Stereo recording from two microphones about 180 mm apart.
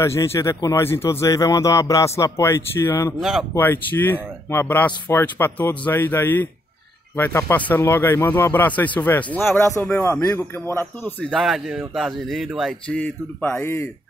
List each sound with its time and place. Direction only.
0.0 s speech: 15° left (ahead or behind)
3.2 s speech: centre (ahead or behind)
3.5 s speech: 10° left (ahead or behind)
11.2 s speech: centre (ahead or behind); by 13.8 s 15° left (ahead or behind)